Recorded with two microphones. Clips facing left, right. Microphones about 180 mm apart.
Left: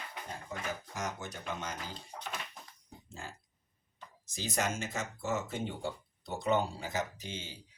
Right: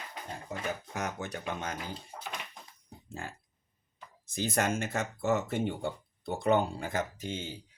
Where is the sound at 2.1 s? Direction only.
5° right (ahead or behind).